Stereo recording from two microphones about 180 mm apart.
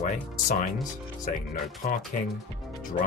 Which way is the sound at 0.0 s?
40° left (ahead or behind).